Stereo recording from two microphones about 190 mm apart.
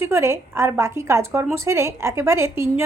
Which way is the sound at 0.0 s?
15° right (ahead or behind).